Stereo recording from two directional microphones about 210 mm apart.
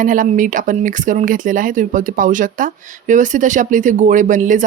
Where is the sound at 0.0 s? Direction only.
40° right (ahead or behind).